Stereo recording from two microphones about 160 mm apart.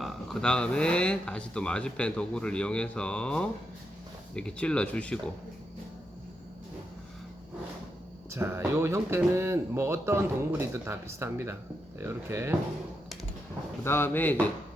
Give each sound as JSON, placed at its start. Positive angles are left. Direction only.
{"t": 0.0, "sound": "speech", "side_deg": 0}
{"t": 8.3, "sound": "speech", "side_deg": -15}
{"t": 13.8, "sound": "speech", "side_deg": 15}